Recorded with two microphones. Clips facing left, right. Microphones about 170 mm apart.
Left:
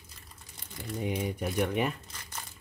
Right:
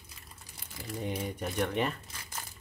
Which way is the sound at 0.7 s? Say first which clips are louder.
Left 2 dB; centre (ahead or behind).